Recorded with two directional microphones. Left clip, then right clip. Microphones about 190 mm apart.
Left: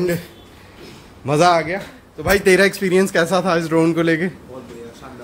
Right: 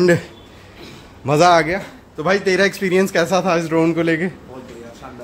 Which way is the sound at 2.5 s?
15° left (ahead or behind).